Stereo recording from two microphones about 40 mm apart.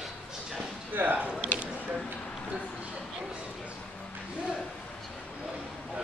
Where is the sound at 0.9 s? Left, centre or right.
Right.